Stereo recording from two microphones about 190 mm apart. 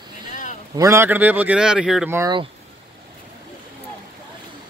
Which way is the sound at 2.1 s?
15° right (ahead or behind).